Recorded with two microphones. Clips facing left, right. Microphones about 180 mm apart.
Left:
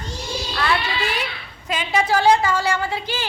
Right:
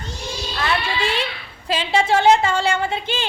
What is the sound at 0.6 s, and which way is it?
A woman's voice, 25° right (ahead or behind).